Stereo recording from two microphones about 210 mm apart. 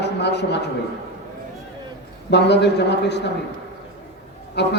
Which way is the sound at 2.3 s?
55° left (ahead or behind).